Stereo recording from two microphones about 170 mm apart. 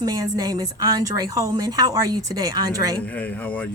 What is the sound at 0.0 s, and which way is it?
A woman's voice, 20° right (ahead or behind).